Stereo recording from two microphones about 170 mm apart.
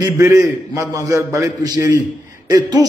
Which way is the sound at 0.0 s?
20° right (ahead or behind).